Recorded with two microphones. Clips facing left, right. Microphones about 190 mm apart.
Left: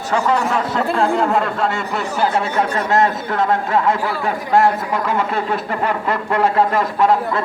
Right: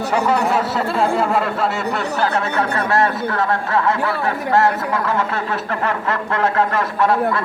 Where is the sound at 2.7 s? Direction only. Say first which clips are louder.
Left 2 dB; 20° left (ahead or behind).